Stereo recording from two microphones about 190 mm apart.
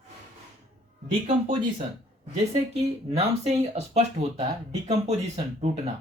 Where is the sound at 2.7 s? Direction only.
30° right (ahead or behind).